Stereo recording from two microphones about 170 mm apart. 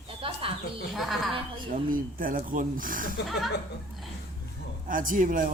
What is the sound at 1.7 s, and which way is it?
Speech, 55° right (ahead or behind).